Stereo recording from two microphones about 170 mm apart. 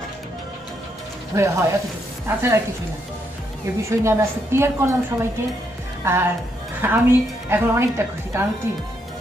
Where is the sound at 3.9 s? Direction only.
15° right (ahead or behind).